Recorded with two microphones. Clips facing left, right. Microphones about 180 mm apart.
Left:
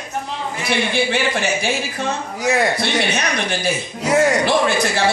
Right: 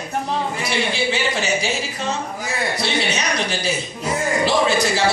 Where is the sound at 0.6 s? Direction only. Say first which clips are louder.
Left 6 dB; 55° left (ahead or behind).